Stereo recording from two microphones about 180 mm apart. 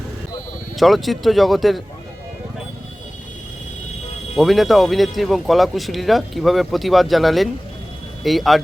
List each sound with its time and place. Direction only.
0.8 s speech: centre (ahead or behind)
4.4 s speech: centre (ahead or behind)